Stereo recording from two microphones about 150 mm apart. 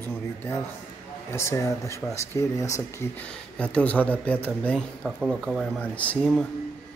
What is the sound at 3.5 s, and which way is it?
Speech, 10° left (ahead or behind).